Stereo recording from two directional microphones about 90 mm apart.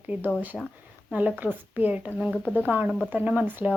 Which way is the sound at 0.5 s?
5° right (ahead or behind).